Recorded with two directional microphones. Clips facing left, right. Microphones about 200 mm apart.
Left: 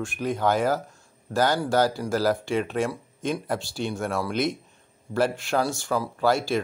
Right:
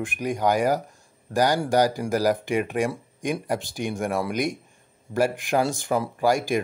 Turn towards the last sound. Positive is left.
turn(degrees=-15)  # may be behind; listen again after turning